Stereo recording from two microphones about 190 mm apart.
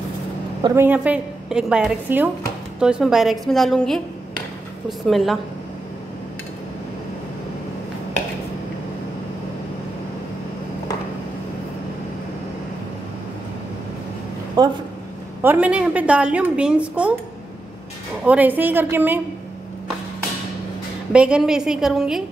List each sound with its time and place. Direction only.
0.6 s a woman's voice: 20° right (ahead or behind)
0.8 s a woman's voice: 5° right (ahead or behind)
14.6 s speech: 20° right (ahead or behind)
15.4 s a woman's voice: 10° right (ahead or behind)
18.2 s a woman's voice: 10° right (ahead or behind)
21.1 s a woman's voice: 5° right (ahead or behind)